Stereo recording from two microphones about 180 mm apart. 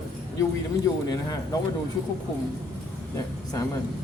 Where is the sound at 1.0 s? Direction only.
20° left (ahead or behind).